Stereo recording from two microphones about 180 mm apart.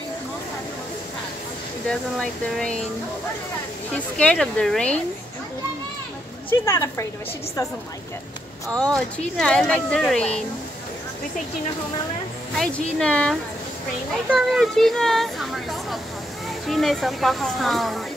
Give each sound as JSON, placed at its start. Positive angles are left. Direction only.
{"t": 1.9, "sound": "speech", "side_deg": 5}
{"t": 4.2, "sound": "speech", "side_deg": 5}
{"t": 6.5, "sound": "a woman's voice", "side_deg": 15}
{"t": 8.6, "sound": "speech", "side_deg": 5}
{"t": 12.5, "sound": "speech", "side_deg": 5}